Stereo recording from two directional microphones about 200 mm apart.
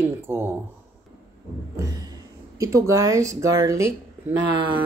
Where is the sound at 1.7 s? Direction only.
15° right (ahead or behind).